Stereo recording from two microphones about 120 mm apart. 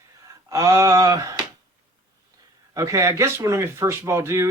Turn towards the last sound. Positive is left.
turn(degrees=-25)  # may be behind; listen again after turning